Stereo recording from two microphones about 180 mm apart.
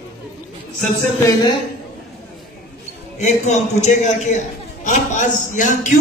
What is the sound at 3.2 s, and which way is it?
A man's voice, 40° left (ahead or behind).